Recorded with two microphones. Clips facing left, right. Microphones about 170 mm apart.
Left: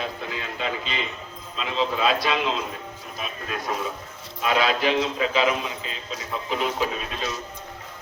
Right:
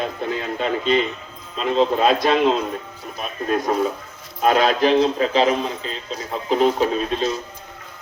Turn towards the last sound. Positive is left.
turn(degrees=-35)  # may be behind; listen again after turning